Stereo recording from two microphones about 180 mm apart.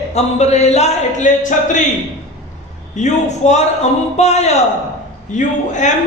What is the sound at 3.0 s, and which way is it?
A man's voice, 40° left (ahead or behind).